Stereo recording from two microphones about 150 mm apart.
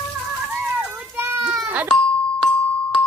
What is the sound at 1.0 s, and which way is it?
Children playing, 15° right (ahead or behind).